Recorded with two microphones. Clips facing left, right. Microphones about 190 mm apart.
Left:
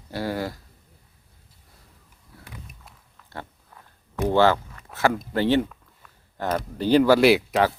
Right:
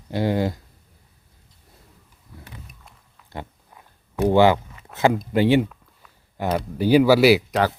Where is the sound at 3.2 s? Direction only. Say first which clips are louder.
Right 3 dB; 15° right (ahead or behind).